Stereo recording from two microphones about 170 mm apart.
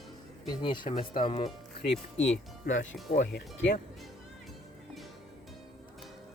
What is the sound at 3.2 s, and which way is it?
Speech, 80° left.